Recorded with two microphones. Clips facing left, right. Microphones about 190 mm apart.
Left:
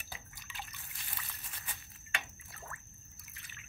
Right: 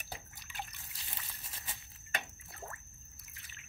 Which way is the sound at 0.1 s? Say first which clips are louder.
Right 3 dB; 40° right (ahead or behind).